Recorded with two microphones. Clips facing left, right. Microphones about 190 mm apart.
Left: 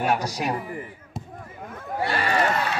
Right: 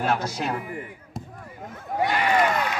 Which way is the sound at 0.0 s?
15° left (ahead or behind).